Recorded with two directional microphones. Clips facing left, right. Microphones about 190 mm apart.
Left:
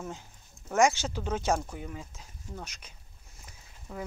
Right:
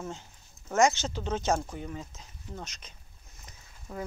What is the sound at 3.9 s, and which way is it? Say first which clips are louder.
Speech: right 1 dB; 5° right (ahead or behind).